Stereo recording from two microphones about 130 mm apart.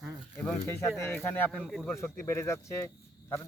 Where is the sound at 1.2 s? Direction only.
15° left (ahead or behind).